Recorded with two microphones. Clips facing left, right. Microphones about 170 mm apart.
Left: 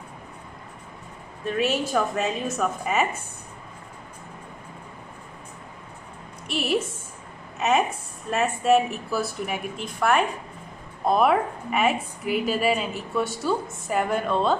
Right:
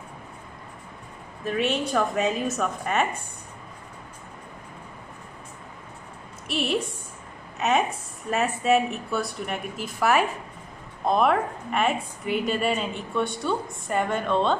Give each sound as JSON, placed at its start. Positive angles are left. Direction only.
{"t": 1.4, "sound": "a woman's voice", "side_deg": 0}
{"t": 6.4, "sound": "a woman's voice", "side_deg": 0}